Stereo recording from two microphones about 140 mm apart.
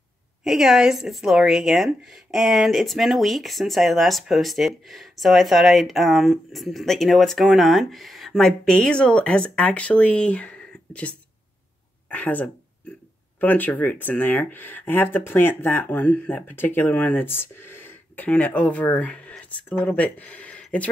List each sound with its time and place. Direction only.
0.4 s speech: 5° right (ahead or behind)